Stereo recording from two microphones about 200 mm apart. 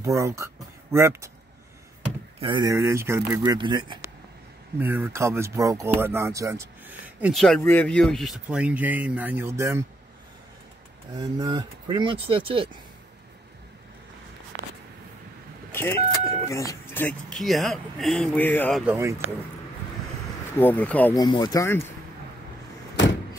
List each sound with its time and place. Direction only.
0.0 s speech: 15° right (ahead or behind)
2.4 s speech: 20° right (ahead or behind)
4.7 s speech: 10° right (ahead or behind)
11.1 s speech: 20° right (ahead or behind)
15.7 s speech: 10° left (ahead or behind)
18.9 s speech: 15° right (ahead or behind)
20.5 s speech: 10° left (ahead or behind)
21.1 s speech: 20° left (ahead or behind)